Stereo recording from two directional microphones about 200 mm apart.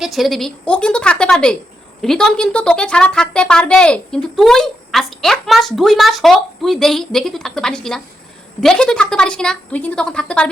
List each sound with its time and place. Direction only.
0.0 s a woman's voice: centre (ahead or behind)